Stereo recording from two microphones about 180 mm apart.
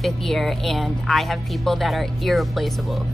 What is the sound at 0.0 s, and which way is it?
Speech, centre (ahead or behind).